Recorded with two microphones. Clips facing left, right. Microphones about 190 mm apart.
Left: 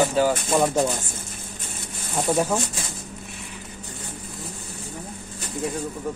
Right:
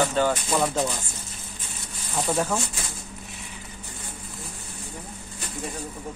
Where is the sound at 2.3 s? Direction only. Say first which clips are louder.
Left 3 dB; 15° left (ahead or behind).